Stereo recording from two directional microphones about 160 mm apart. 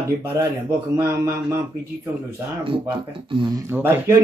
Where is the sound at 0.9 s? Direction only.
15° right (ahead or behind).